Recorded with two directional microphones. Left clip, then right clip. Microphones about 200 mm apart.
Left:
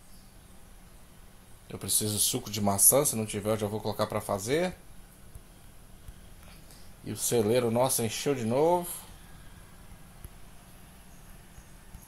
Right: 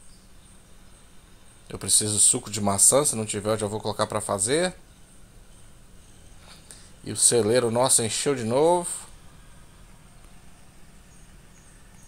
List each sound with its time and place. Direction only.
1.7 s speech: 20° right (ahead or behind)
7.1 s speech: 20° right (ahead or behind)